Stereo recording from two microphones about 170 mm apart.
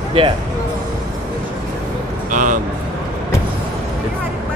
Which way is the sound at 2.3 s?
50° right (ahead or behind).